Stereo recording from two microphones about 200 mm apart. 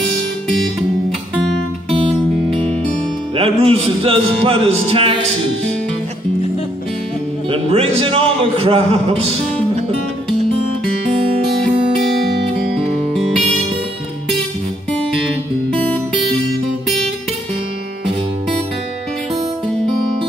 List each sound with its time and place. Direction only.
1.3 s guitar: centre (ahead or behind)
3.3 s a man's voice: 25° right (ahead or behind)
7.4 s a man's voice: 30° right (ahead or behind)